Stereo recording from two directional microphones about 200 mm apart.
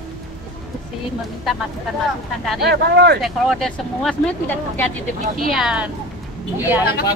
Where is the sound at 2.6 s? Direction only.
55° right (ahead or behind).